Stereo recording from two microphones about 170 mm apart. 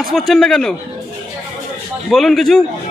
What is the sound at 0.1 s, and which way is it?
Speech, centre (ahead or behind).